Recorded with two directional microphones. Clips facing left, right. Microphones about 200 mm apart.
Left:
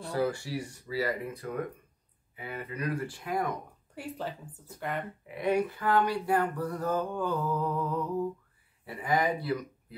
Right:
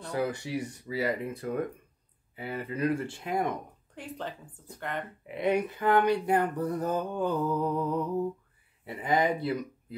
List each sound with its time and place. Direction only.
0.1 s speech: 20° right (ahead or behind)
3.9 s speech: 10° left (ahead or behind)
5.2 s speech: 20° right (ahead or behind)